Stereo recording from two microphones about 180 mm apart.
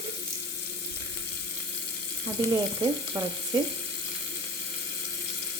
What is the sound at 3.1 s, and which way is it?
Speech, 15° right (ahead or behind).